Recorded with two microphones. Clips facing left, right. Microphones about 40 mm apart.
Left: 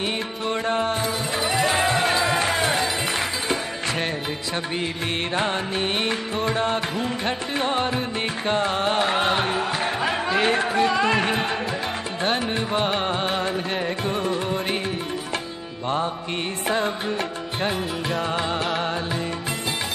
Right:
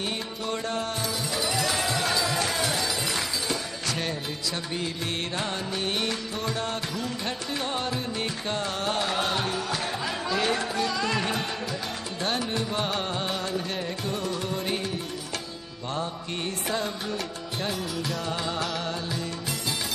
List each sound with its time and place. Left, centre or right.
0.5 s music: left
5.3 s music: left
16.6 s music: left